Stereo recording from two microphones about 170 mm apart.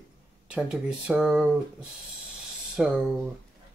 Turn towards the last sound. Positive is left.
turn(degrees=-5)  # may be behind; listen again after turning